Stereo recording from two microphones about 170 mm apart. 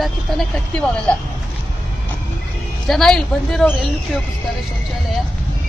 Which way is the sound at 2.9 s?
Centre (ahead or behind).